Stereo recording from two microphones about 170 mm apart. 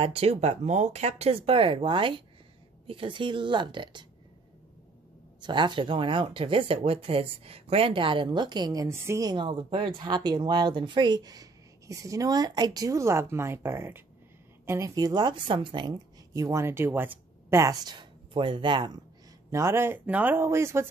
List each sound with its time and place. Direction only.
0.0 s speech: 35° right (ahead or behind)
5.4 s speech: 25° right (ahead or behind)
19.5 s speech: 15° right (ahead or behind)